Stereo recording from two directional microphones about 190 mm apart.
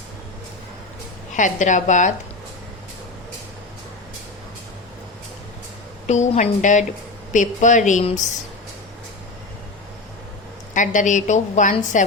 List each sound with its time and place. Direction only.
1.4 s a woman's voice: 40° left (ahead or behind)
6.1 s a woman's voice: 40° left (ahead or behind)
10.8 s a woman's voice: 40° left (ahead or behind)